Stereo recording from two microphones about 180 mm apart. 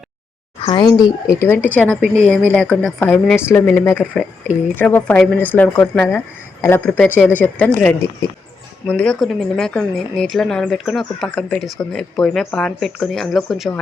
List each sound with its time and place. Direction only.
0.6 s speech: 25° left (ahead or behind)
1.4 s speech: 10° left (ahead or behind)